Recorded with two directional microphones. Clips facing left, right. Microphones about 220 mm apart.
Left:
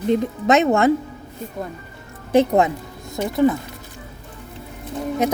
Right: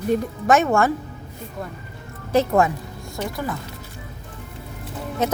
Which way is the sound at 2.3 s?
20° left (ahead or behind).